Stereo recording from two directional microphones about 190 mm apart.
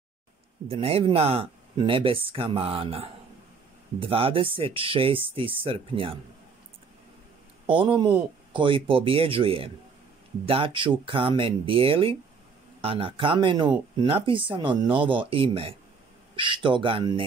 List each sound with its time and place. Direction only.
0.7 s speech: 30° right (ahead or behind)
7.6 s speech: 25° right (ahead or behind)